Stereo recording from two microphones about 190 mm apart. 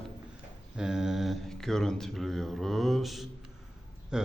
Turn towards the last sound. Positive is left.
turn(degrees=-5)  # may be behind; listen again after turning